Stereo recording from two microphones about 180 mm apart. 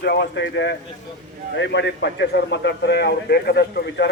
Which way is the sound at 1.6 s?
75° left (ahead or behind).